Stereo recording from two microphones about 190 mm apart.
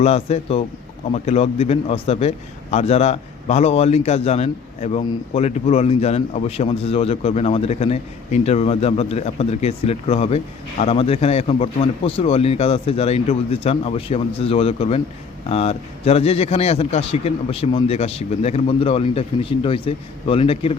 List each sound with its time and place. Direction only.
0.0 s a man's voice: 35° left (ahead or behind)